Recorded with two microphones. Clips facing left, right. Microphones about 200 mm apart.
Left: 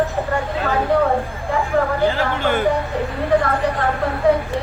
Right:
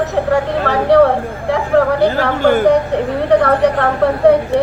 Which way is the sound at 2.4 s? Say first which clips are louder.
Right 11 dB; 40° right (ahead or behind).